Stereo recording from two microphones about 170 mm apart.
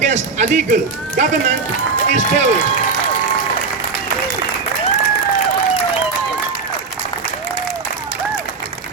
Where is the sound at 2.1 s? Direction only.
45° right (ahead or behind).